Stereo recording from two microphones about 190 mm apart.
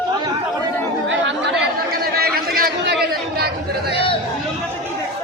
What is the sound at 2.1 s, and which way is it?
Chatter, 50° right (ahead or behind).